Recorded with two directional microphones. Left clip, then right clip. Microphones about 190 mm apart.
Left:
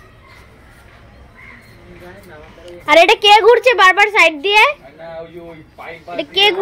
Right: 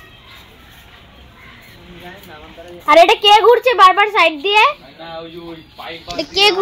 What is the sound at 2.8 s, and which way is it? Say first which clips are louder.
A child's voice: even; 15° left (ahead or behind).